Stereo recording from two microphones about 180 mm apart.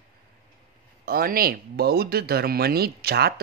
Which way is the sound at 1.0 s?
55° right (ahead or behind).